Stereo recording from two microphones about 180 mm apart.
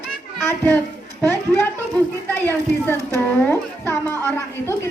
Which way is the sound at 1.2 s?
15° left (ahead or behind).